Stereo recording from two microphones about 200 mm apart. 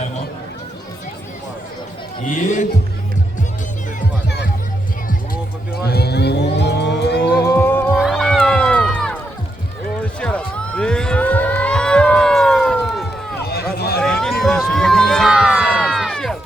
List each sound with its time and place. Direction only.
2.2 s speech: 40° left (ahead or behind)
5.3 s vehicle: 50° left (ahead or behind)
7.4 s music: 15° left (ahead or behind)
7.9 s cat: centre (ahead or behind)
10.2 s a sound: 5° left (ahead or behind)
13.4 s run: 50° left (ahead or behind)
13.7 s a sound: 50° left (ahead or behind)
14.0 s crowd: 5° left (ahead or behind)